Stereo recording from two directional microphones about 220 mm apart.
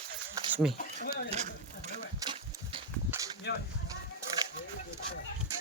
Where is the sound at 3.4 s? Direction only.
50° left (ahead or behind).